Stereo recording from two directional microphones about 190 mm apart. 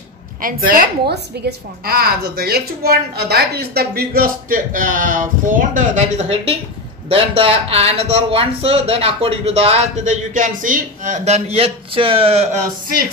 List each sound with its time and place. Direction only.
0.4 s a woman's voice: 45° right (ahead or behind); by 12.6 s 30° right (ahead or behind)